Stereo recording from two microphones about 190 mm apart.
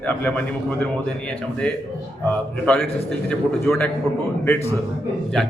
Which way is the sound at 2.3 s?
10° left (ahead or behind).